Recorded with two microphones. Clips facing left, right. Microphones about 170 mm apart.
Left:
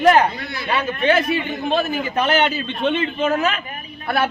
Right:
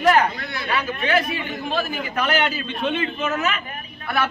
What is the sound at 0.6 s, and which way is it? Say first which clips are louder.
A man's voice: left 6 dB; 25° left (ahead or behind).